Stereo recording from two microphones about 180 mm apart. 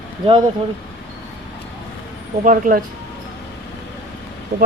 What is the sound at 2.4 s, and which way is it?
Speech, 45° right (ahead or behind).